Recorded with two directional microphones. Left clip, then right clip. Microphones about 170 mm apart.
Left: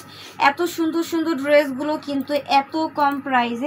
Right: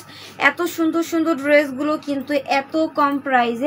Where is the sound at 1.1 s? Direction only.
45° right (ahead or behind).